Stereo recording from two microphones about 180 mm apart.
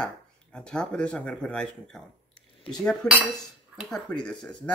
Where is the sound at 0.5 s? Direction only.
5° left (ahead or behind).